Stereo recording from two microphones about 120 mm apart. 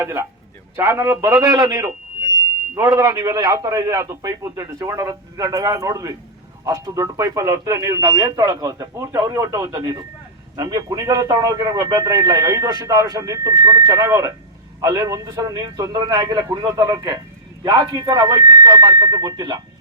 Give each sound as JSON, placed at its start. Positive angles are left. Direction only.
{"t": 0.0, "sound": "a man's voice", "side_deg": -25}